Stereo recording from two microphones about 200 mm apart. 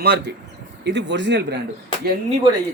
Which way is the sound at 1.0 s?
60° right (ahead or behind).